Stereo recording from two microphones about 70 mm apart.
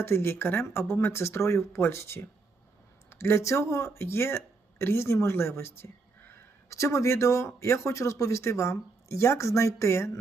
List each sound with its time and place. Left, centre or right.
0.0 s speech: left